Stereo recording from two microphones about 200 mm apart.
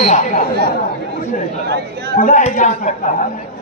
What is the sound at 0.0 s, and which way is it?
Speech, 35° left (ahead or behind).